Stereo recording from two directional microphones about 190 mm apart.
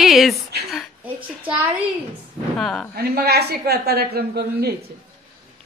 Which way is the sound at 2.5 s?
5° left (ahead or behind).